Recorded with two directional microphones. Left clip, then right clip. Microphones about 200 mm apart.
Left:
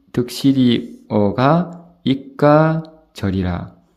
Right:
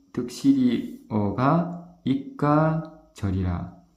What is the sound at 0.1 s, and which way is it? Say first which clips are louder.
Speech: left 5 dB; 40° left (ahead or behind).